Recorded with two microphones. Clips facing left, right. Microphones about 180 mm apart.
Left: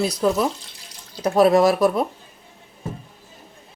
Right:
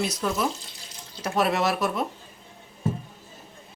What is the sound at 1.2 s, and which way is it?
Speech, 35° left (ahead or behind).